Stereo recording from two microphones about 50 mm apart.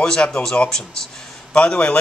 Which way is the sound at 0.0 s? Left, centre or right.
Centre.